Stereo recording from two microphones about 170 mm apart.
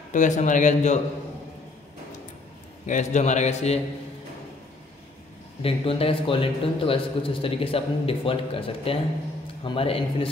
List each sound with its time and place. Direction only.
0.1 s a man's voice: 45° left (ahead or behind)
2.9 s a man's voice: 45° left (ahead or behind)
5.6 s a man's voice: 35° left (ahead or behind)